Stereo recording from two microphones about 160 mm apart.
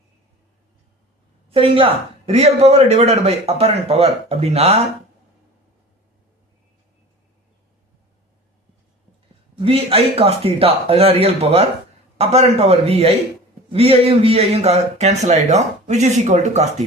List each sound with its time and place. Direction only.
1.5 s speech: 35° right (ahead or behind)
9.6 s speech: 35° right (ahead or behind)